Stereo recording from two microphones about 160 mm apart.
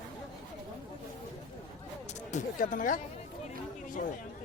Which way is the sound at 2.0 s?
50° left (ahead or behind).